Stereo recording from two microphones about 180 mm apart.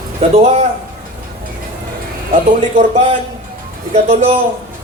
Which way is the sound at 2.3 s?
40° right (ahead or behind).